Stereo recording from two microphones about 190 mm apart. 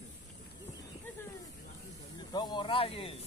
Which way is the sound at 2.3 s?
25° left (ahead or behind).